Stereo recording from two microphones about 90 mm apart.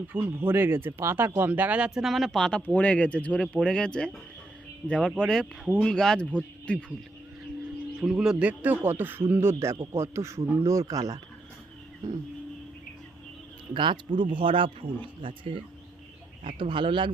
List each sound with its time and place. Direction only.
0.1 s speech: 25° right (ahead or behind); by 2.6 s 5° left (ahead or behind)
2.7 s speech: 15° left (ahead or behind)
7.9 s a man's voice: 10° right (ahead or behind); by 11.2 s 40° right (ahead or behind)
13.7 s speech: 65° right (ahead or behind)